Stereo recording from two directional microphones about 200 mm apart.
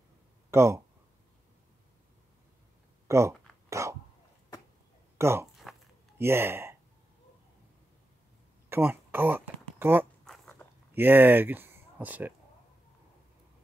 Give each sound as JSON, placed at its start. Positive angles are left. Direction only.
{"t": 0.5, "sound": "speech", "side_deg": -15}
{"t": 3.1, "sound": "a sound", "side_deg": -15}
{"t": 5.1, "sound": "speech", "side_deg": -15}
{"t": 8.6, "sound": "a sound", "side_deg": -10}
{"t": 10.2, "sound": "dog", "side_deg": 0}
{"t": 11.0, "sound": "speech", "side_deg": -10}